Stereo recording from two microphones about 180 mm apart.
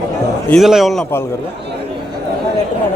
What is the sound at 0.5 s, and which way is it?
Speech, centre (ahead or behind).